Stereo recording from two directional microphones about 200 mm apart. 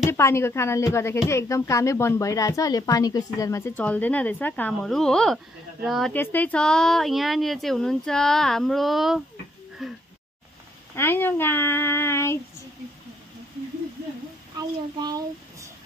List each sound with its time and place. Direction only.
0.1 s speech: 15° left (ahead or behind)
9.8 s a sound: centre (ahead or behind)
11.0 s speech: 10° left (ahead or behind)
15.0 s a child's voice: 20° right (ahead or behind)